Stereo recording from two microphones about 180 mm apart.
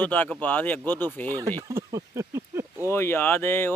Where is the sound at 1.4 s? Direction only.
20° right (ahead or behind).